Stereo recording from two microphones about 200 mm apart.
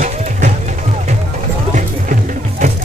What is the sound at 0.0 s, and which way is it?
Music, 35° right (ahead or behind).